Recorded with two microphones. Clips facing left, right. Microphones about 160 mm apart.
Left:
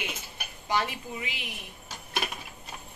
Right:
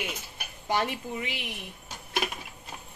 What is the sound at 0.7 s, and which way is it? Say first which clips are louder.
Speech: right 1 dB; 50° right (ahead or behind).